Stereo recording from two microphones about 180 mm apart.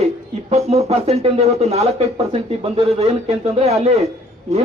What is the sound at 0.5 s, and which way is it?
Speech, 35° right (ahead or behind).